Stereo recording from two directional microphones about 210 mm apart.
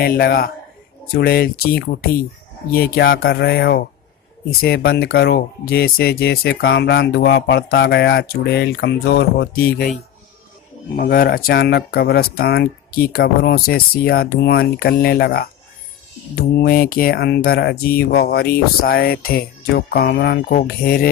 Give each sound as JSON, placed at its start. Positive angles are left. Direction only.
{"t": 0.0, "sound": "speech", "side_deg": 45}